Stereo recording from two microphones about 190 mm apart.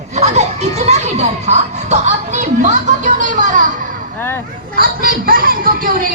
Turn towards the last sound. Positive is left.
turn(degrees=-50)  # may be behind; listen again after turning